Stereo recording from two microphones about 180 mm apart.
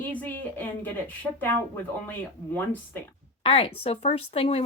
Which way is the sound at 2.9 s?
10° left (ahead or behind).